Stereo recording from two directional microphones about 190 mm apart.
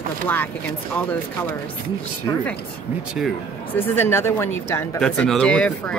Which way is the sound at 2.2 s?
10° left (ahead or behind).